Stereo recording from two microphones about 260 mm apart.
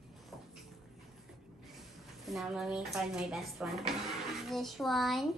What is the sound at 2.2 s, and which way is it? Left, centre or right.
Speech, centre.